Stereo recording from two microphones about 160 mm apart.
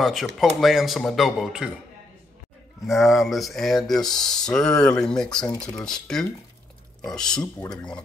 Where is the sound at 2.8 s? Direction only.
Centre (ahead or behind).